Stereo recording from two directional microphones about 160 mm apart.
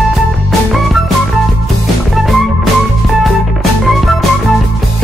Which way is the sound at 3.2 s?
Centre (ahead or behind).